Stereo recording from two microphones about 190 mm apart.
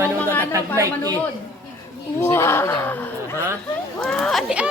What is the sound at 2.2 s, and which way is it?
Speech, 10° left (ahead or behind).